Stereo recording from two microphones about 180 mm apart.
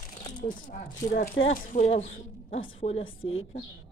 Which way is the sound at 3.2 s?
90° left.